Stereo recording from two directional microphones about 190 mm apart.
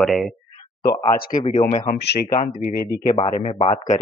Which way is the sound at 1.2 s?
45° left (ahead or behind).